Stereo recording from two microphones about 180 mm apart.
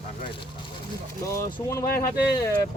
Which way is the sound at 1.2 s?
15° left (ahead or behind).